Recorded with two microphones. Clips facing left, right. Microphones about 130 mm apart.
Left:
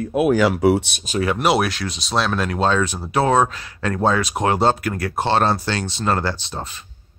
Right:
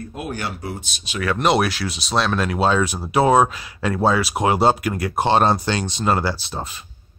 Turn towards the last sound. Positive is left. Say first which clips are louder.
# right 1 dB
turn(degrees=-10)  # may be behind; listen again after turning